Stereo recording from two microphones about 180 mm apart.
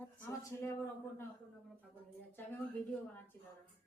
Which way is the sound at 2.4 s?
10° left (ahead or behind).